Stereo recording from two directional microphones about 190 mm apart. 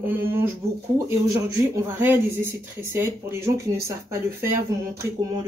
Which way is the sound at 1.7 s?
10° right (ahead or behind).